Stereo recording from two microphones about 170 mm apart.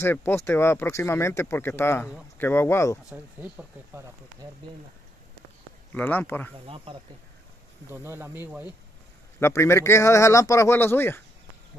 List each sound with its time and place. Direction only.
0.0 s speech: 10° left (ahead or behind)
3.1 s speech: 10° right (ahead or behind)
5.9 s speech: 10° left (ahead or behind)
6.6 s speech: 35° right (ahead or behind)
7.9 s speech: 15° right (ahead or behind)
9.4 s speech: 15° left (ahead or behind)